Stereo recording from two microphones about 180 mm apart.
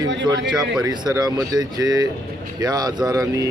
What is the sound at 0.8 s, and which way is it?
Speech, 20° right (ahead or behind).